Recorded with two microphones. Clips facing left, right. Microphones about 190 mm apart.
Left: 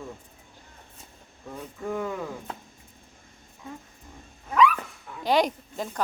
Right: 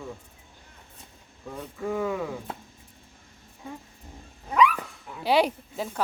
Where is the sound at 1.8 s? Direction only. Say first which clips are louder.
Right 3 dB; 5° right (ahead or behind).